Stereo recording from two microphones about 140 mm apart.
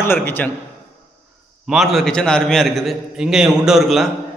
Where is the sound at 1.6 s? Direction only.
Centre (ahead or behind).